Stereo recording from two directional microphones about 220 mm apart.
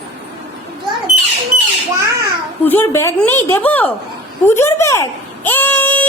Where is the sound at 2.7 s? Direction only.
10° left (ahead or behind).